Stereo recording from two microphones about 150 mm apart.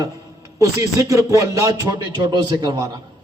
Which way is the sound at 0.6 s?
20° right (ahead or behind).